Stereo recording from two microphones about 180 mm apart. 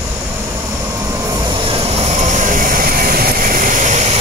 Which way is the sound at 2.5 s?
55° right (ahead or behind).